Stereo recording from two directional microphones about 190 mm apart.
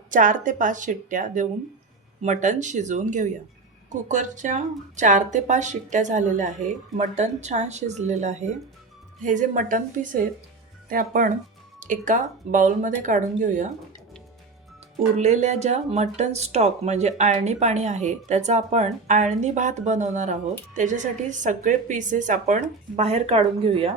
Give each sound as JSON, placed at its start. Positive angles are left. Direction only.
{"t": 0.1, "sound": "a woman's voice", "side_deg": -45}
{"t": 15.1, "sound": "speech", "side_deg": -35}